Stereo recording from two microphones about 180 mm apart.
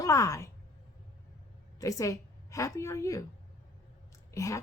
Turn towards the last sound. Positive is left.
turn(degrees=15)  # may be behind; listen again after turning